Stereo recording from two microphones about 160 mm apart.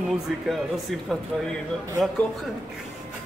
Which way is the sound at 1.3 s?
Centre (ahead or behind).